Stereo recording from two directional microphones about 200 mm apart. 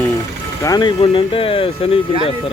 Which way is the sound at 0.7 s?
20° left (ahead or behind).